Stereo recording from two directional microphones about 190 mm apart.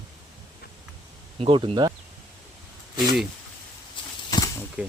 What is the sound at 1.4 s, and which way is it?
Speech, 25° right (ahead or behind).